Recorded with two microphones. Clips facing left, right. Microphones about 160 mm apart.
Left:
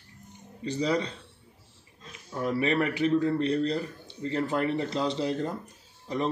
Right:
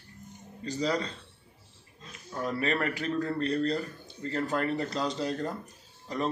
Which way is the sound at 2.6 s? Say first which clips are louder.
Left 5 dB; 15° left (ahead or behind).